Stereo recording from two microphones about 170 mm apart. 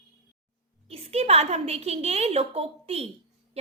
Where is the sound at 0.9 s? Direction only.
35° right (ahead or behind).